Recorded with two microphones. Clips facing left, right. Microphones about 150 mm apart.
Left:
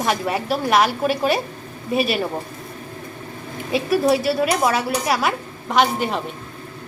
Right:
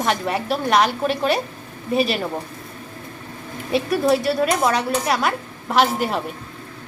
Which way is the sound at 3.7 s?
Centre (ahead or behind).